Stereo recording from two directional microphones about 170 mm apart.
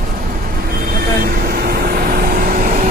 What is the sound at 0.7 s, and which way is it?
Vehicle, 60° right (ahead or behind).